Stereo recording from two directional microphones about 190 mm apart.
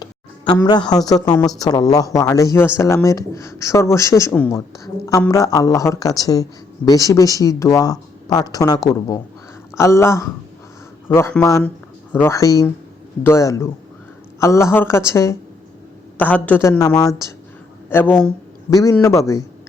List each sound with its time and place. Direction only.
0.0 s speech: 20° left (ahead or behind)